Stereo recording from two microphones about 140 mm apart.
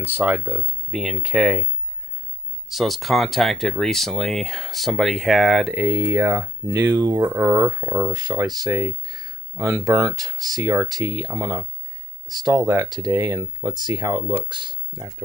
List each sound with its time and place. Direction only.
0.0 s speech: 10° right (ahead or behind)
2.7 s speech: centre (ahead or behind); by 14.8 s 35° right (ahead or behind)
15.0 s speech: 5° right (ahead or behind)